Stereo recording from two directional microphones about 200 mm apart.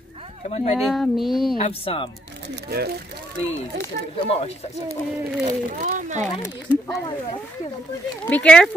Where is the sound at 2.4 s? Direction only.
55° right (ahead or behind).